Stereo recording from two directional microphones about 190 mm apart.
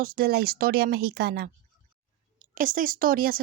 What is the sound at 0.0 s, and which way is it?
Speech, 50° right (ahead or behind).